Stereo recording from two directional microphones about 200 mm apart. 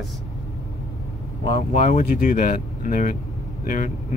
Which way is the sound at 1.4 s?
30° left (ahead or behind).